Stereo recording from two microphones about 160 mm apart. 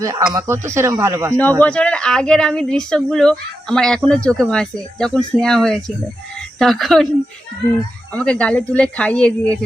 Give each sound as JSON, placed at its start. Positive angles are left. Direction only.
{"t": 0.0, "sound": "speech", "side_deg": -20}
{"t": 1.4, "sound": "speech", "side_deg": 10}
{"t": 8.1, "sound": "speech", "side_deg": 5}